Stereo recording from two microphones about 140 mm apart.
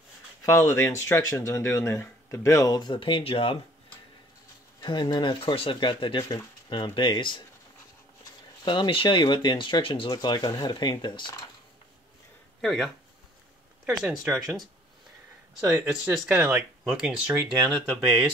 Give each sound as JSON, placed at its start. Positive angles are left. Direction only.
{"t": 0.5, "sound": "speech", "side_deg": 20}
{"t": 4.8, "sound": "speech", "side_deg": 30}
{"t": 8.6, "sound": "speech", "side_deg": 35}
{"t": 12.6, "sound": "speech", "side_deg": 0}
{"t": 15.6, "sound": "speech", "side_deg": -5}